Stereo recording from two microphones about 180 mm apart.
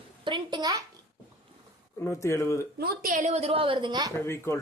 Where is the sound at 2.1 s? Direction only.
15° left (ahead or behind).